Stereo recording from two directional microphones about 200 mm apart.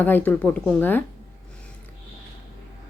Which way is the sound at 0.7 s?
10° left (ahead or behind).